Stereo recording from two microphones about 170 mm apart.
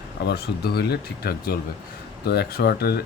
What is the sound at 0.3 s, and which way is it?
Speech, 70° left (ahead or behind).